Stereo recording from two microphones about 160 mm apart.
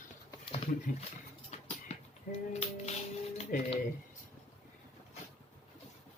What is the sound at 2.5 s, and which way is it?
Music, 40° left (ahead or behind).